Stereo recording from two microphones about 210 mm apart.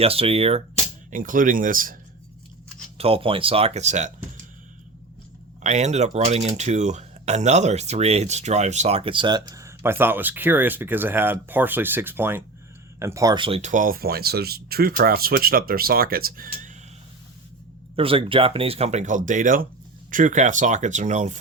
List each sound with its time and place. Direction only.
0.0 s speech: 25° right (ahead or behind)
1.1 s speech: 40° right (ahead or behind)
3.0 s speech: 25° right (ahead or behind)
5.6 s speech: 35° right (ahead or behind)
17.9 s speech: 25° right (ahead or behind)